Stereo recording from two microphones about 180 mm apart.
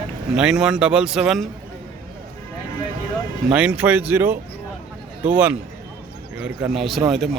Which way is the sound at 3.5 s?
5° right (ahead or behind).